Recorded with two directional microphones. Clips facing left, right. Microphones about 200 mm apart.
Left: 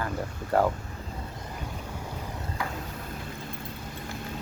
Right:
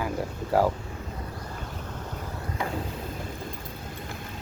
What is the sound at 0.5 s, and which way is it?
Speech, 5° right (ahead or behind).